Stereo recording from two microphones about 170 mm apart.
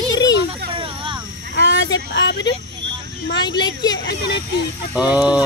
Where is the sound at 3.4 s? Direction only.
25° left (ahead or behind).